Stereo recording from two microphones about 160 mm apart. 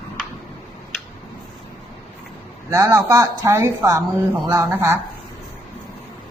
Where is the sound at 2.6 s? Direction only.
15° right (ahead or behind).